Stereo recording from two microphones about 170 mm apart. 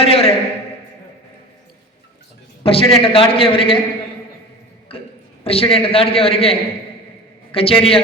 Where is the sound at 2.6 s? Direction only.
35° left (ahead or behind).